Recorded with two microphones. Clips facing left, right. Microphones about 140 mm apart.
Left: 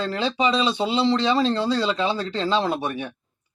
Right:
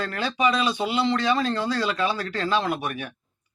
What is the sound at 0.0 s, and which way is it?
A man's voice, 25° left (ahead or behind).